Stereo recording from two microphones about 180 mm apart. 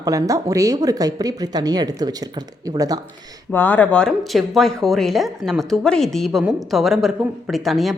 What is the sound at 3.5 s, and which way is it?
Speech, 10° left (ahead or behind).